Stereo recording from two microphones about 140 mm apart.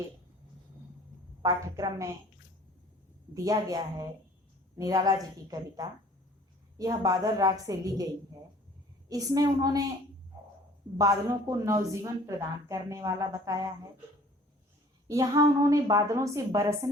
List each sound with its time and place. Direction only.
1.4 s a woman's voice: 25° right (ahead or behind)
3.3 s a woman's voice: 25° right (ahead or behind)
9.0 s a woman's voice: 25° right (ahead or behind)
10.9 s a woman's voice: 25° right (ahead or behind)
15.0 s a woman's voice: 25° right (ahead or behind)